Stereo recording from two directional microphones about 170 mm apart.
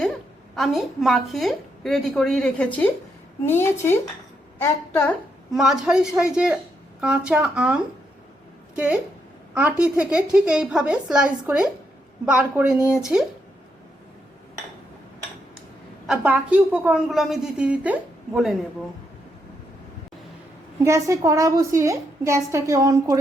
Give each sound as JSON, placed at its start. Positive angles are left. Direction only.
{"t": 0.5, "sound": "a woman's voice", "side_deg": 0}
{"t": 5.5, "sound": "a woman's voice", "side_deg": 0}
{"t": 16.0, "sound": "a woman's voice", "side_deg": -10}
{"t": 20.8, "sound": "a woman's voice", "side_deg": -20}